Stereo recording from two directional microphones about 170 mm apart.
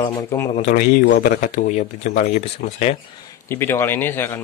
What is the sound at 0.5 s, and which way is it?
Speech, 35° left (ahead or behind).